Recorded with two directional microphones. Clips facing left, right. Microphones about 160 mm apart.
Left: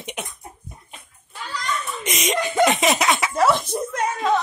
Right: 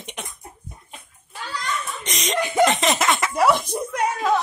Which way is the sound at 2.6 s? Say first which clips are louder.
Even; 5° left (ahead or behind).